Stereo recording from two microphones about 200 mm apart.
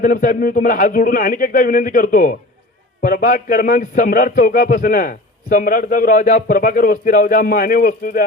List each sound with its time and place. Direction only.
0.0 s speech: 40° left (ahead or behind)